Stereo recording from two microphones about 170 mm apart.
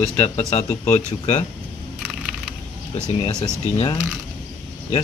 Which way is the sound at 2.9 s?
40° left (ahead or behind).